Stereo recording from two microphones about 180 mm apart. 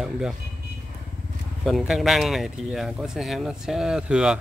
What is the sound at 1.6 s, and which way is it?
Speech, centre (ahead or behind).